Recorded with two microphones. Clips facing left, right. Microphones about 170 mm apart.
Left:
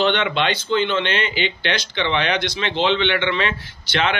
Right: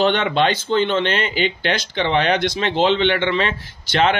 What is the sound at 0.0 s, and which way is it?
Speech, 40° right (ahead or behind).